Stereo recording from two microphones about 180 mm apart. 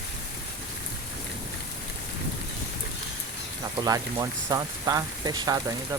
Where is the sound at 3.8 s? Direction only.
20° right (ahead or behind).